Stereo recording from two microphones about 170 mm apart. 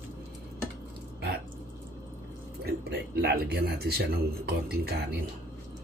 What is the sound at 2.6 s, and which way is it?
Speech, 70° right (ahead or behind).